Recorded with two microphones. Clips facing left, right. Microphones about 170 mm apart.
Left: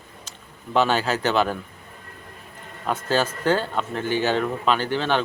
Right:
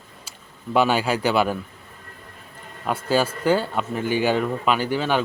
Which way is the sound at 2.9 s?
10° right (ahead or behind).